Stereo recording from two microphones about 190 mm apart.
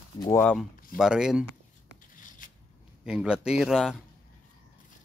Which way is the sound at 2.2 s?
45° left (ahead or behind).